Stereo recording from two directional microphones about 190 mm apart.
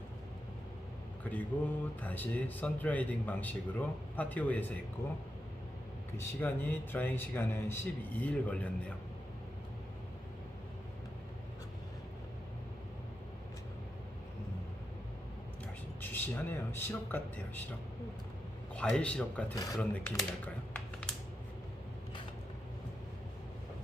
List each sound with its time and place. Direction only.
1.2 s speech: 10° left (ahead or behind)
6.1 s speech: 10° left (ahead or behind)
16.0 s speech: 10° left (ahead or behind)
18.8 s speech: 5° left (ahead or behind)
19.5 s speech: 20° left (ahead or behind)
19.8 s speech: 10° left (ahead or behind)